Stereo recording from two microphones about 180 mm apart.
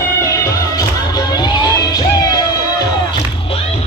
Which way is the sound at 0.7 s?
20° left (ahead or behind).